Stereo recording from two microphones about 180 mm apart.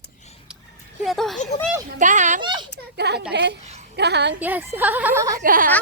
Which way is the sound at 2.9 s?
65° right (ahead or behind).